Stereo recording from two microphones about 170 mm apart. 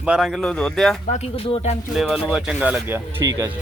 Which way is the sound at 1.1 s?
35° left (ahead or behind).